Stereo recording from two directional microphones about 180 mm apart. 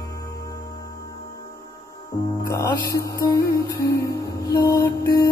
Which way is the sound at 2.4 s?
15° left (ahead or behind).